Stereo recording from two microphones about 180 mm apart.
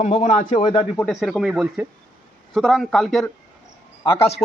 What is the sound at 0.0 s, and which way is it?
Speech, 35° left (ahead or behind).